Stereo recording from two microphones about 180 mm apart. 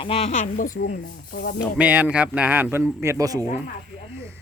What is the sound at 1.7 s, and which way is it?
Speech, 10° right (ahead or behind).